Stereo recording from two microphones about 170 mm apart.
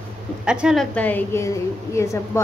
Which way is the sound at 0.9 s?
10° left (ahead or behind).